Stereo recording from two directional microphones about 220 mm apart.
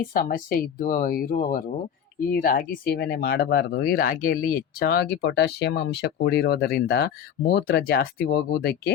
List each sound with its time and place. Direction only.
0.0 s speech: 40° left (ahead or behind)